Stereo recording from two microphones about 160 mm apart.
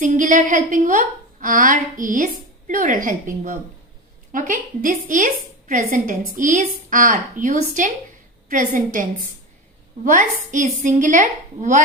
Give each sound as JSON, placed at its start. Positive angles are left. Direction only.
{"t": 0.0, "sound": "a woman's voice", "side_deg": -55}
{"t": 10.0, "sound": "a woman's voice", "side_deg": -55}